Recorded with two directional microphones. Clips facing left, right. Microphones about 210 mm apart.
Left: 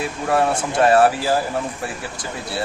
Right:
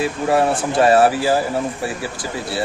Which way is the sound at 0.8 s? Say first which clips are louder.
Right 1 dB; 5° right (ahead or behind).